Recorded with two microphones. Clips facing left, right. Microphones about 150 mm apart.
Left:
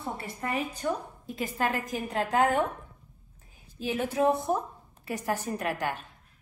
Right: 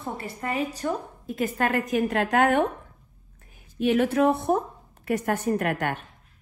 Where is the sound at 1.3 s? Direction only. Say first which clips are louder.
Right 5 dB; 50° right (ahead or behind).